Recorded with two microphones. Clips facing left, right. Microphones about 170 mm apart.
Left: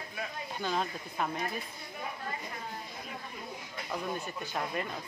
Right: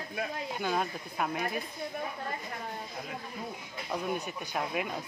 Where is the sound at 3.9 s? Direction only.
15° right (ahead or behind).